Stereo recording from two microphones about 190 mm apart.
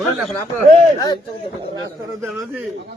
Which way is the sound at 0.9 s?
20° left (ahead or behind).